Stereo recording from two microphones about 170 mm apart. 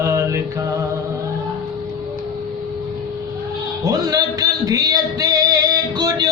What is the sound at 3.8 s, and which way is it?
Music, 20° right (ahead or behind).